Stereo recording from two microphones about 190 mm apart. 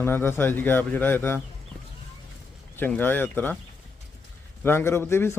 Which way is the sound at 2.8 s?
10° left (ahead or behind).